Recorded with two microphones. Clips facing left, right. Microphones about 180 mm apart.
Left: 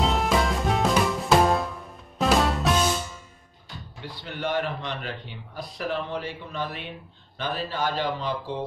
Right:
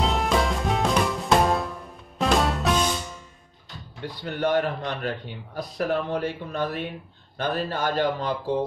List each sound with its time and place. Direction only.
0.0 s music: centre (ahead or behind)
4.0 s speech: 50° right (ahead or behind)